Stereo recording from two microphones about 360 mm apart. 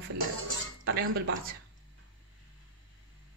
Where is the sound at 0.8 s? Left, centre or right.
Right.